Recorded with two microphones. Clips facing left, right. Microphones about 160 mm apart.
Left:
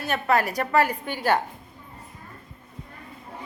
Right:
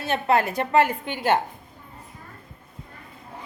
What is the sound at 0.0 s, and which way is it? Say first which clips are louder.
A woman's voice: right 1 dB; 25° right (ahead or behind).